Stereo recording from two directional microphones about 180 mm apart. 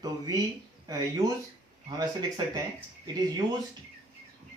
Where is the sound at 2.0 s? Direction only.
20° right (ahead or behind).